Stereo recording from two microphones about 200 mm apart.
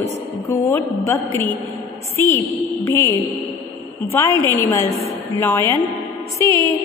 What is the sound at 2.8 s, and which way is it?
Speech, 15° left (ahead or behind).